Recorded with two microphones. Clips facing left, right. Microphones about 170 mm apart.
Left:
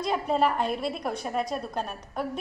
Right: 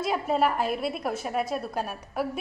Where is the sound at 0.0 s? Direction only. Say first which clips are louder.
Even; 5° right (ahead or behind).